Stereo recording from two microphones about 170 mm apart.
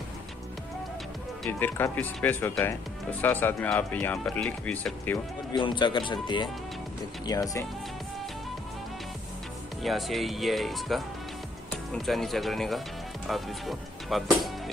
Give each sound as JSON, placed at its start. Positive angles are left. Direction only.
{"t": 1.5, "sound": "speech", "side_deg": 10}
{"t": 5.5, "sound": "speech", "side_deg": 25}
{"t": 9.8, "sound": "speech", "side_deg": 0}